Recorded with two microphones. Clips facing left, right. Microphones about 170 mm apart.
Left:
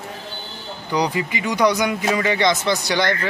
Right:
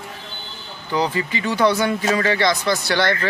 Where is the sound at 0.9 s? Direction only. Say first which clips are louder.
Even; 15° left (ahead or behind).